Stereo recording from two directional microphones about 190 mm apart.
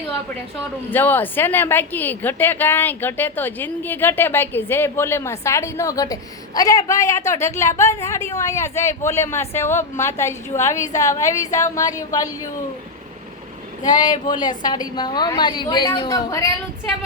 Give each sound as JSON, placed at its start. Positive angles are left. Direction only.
{"t": 0.9, "sound": "a woman's voice", "side_deg": 10}
{"t": 13.8, "sound": "a woman's voice", "side_deg": 20}